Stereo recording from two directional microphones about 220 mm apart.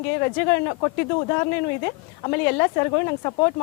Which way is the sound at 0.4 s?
20° left (ahead or behind).